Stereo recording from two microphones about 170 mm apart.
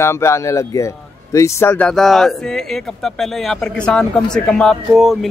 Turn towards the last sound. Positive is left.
turn(degrees=0)  # may be behind; listen again after turning